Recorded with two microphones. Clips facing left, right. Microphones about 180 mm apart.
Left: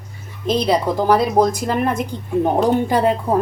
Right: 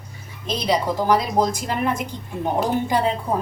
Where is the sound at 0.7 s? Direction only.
55° left (ahead or behind).